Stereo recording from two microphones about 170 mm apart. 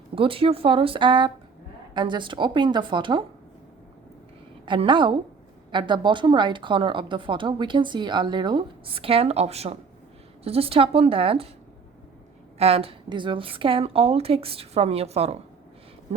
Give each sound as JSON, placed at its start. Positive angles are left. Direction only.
{"t": 0.2, "sound": "a woman's voice", "side_deg": -30}
{"t": 4.6, "sound": "a woman's voice", "side_deg": -30}
{"t": 12.5, "sound": "a woman's voice", "side_deg": -35}